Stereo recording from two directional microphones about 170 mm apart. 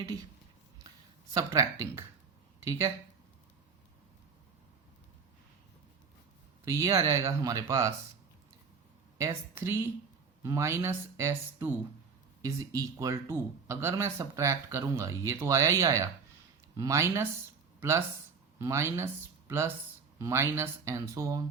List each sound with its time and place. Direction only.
0.9 s speech: 20° right (ahead or behind)
6.7 s speech: 15° right (ahead or behind)
9.1 s a woman's voice: 15° right (ahead or behind)